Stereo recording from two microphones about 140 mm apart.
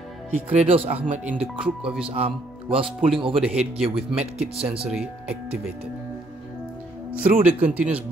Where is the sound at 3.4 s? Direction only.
5° right (ahead or behind).